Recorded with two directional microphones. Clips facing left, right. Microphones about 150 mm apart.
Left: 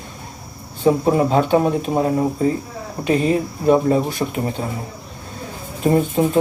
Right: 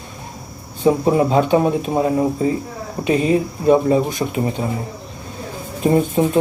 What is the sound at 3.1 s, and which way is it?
Speech, 15° right (ahead or behind).